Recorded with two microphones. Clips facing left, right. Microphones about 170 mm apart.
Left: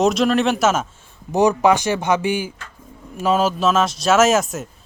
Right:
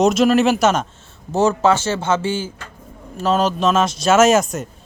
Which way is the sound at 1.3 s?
15° left (ahead or behind).